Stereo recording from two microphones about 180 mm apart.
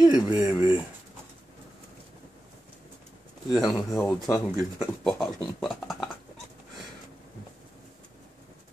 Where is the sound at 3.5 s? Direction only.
Centre (ahead or behind).